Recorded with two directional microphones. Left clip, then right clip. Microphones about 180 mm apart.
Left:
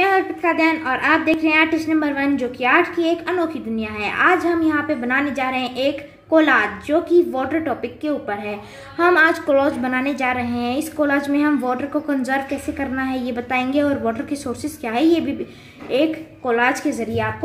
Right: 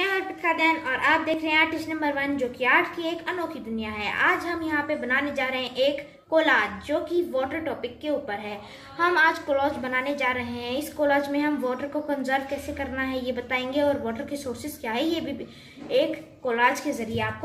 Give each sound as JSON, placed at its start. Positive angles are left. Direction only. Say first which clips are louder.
{"t": 0.0, "sound": "a woman's voice", "louder": "left 8 dB", "side_deg": 60}